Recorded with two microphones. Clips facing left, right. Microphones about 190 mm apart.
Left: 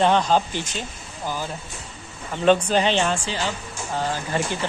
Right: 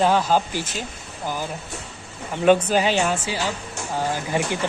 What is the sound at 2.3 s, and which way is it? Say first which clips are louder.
Speech: right 1 dB; 10° right (ahead or behind).